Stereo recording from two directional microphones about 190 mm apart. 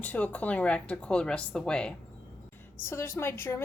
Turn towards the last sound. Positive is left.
turn(degrees=10)  # may be behind; listen again after turning